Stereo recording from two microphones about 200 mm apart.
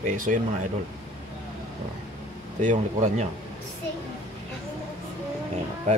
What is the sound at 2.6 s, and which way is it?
Speech, 35° right (ahead or behind).